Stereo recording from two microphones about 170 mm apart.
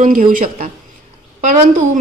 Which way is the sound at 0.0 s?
55° right (ahead or behind).